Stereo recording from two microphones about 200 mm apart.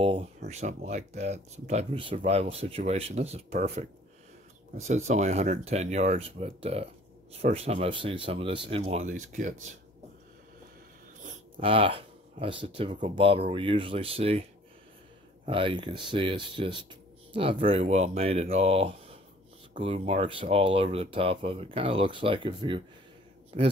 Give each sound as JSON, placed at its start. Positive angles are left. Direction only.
{"t": 0.0, "sound": "speech", "side_deg": -30}
{"t": 11.5, "sound": "speech", "side_deg": -25}
{"t": 15.4, "sound": "speech", "side_deg": -25}